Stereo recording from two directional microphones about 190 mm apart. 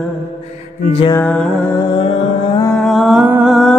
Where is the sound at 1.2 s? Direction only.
5° left (ahead or behind).